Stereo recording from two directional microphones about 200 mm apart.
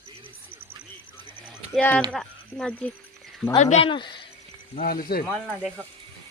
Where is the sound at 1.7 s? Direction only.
5° left (ahead or behind).